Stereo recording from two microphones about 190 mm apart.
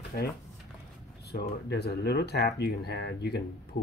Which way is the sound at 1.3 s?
60° left (ahead or behind).